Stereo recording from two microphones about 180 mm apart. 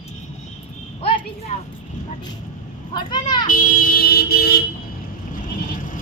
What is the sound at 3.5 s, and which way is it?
Vehicle, 50° left (ahead or behind).